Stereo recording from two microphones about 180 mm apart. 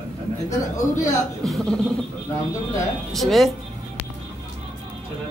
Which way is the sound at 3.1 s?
Centre (ahead or behind).